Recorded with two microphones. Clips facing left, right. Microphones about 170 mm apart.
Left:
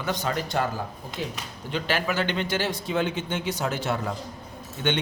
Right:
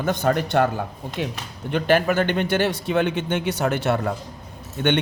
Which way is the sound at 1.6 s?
55° right (ahead or behind).